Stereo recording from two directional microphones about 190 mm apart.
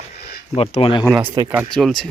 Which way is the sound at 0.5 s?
30° left (ahead or behind).